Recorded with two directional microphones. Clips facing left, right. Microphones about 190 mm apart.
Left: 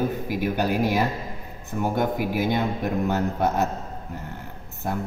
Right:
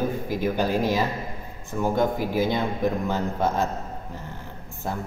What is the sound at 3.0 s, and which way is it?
Speech, 15° left (ahead or behind).